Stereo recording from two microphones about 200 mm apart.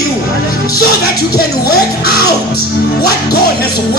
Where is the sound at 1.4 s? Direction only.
50° left (ahead or behind).